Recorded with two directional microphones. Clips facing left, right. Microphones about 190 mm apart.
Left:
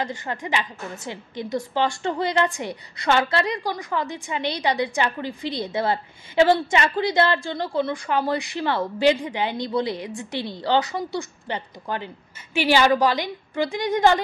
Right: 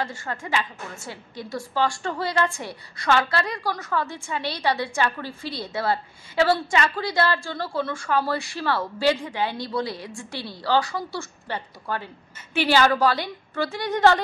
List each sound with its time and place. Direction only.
0.0 s a woman's voice: 20° left (ahead or behind)